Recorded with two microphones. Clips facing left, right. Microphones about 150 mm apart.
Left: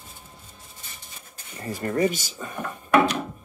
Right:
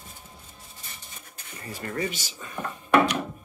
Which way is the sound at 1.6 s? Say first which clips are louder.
Left 8 dB; 40° left (ahead or behind).